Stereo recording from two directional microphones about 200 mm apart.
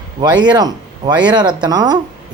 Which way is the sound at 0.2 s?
20° right (ahead or behind).